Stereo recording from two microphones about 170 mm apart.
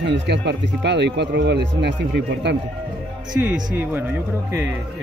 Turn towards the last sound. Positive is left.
turn(degrees=-10)  # may be behind; listen again after turning